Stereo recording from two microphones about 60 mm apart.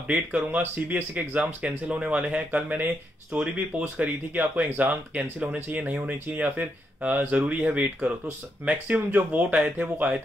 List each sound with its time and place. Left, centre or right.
0.1 s speech: right